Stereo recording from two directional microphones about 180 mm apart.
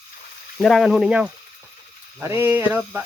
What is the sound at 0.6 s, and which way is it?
Speech, centre (ahead or behind).